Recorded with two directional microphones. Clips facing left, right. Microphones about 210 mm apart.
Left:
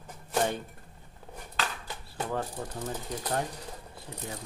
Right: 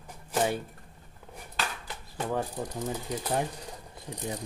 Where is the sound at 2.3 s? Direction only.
15° right (ahead or behind).